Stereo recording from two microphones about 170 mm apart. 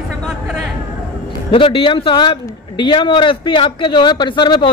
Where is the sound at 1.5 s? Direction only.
30° left (ahead or behind).